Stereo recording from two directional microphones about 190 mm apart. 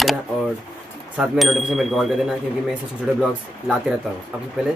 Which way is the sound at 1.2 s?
Centre (ahead or behind).